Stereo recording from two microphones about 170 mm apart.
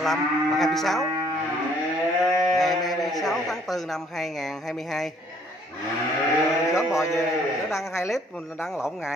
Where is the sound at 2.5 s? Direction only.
Centre (ahead or behind).